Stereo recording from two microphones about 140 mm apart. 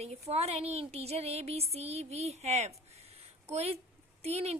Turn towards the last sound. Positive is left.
turn(degrees=-50)  # may be behind; listen again after turning